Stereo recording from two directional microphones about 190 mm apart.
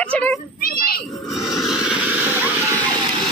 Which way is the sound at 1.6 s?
5° right (ahead or behind).